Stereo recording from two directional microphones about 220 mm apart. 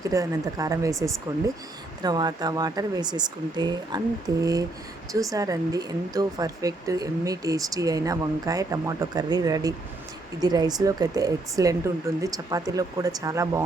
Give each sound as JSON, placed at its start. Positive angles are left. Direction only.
{"t": 0.0, "sound": "speech", "side_deg": -15}